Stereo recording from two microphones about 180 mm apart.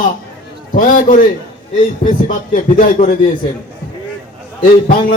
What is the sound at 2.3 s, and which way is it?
Speech, 45° left (ahead or behind).